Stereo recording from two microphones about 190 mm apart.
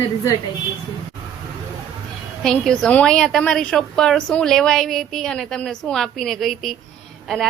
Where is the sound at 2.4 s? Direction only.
5° left (ahead or behind).